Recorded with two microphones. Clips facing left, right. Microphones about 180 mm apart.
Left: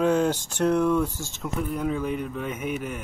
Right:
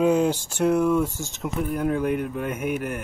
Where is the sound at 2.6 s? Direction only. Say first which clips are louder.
Right 4 dB; 55° right (ahead or behind).